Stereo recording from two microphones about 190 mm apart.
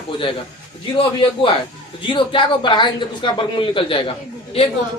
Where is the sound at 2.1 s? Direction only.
25° left (ahead or behind).